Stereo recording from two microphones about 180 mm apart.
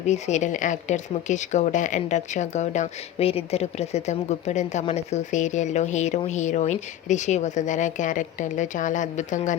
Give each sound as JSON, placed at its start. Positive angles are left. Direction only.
{"t": 0.1, "sound": "speech", "side_deg": 40}